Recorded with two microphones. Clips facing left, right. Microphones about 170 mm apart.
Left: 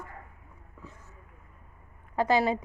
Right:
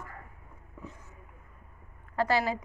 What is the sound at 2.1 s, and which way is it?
Speech, 20° left (ahead or behind).